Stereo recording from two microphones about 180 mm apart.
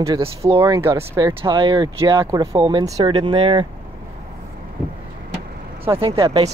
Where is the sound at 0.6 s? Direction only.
15° right (ahead or behind).